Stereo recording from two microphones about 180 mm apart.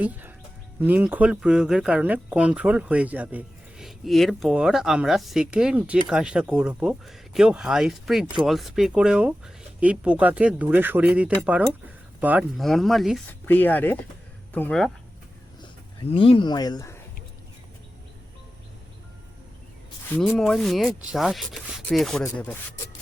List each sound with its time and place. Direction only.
0.0 s speech: 10° right (ahead or behind)
16.0 s speech: 30° left (ahead or behind)
20.1 s speech: 5° left (ahead or behind)